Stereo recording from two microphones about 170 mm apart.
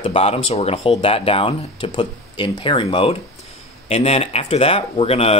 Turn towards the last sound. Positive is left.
turn(degrees=35)  # may be behind; listen again after turning